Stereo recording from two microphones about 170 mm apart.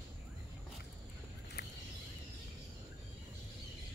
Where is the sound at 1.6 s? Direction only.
75° left (ahead or behind).